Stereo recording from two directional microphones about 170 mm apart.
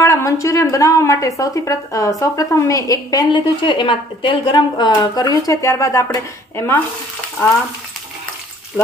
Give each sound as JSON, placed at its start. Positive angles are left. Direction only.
{"t": 0.0, "sound": "a woman's voice", "side_deg": 20}